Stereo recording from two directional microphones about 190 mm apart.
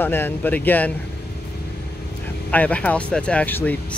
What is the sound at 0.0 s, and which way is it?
Speech, 10° left (ahead or behind).